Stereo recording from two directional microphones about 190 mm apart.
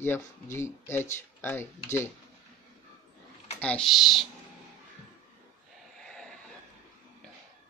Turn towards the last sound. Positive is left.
turn(degrees=5)  # may be behind; listen again after turning